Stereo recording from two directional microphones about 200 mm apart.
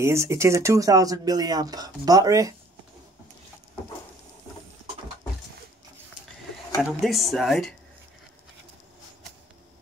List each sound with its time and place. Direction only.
0.0 s speech: 15° right (ahead or behind)
6.8 s speech: centre (ahead or behind)